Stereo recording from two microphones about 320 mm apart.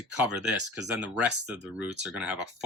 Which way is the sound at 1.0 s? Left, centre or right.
Centre.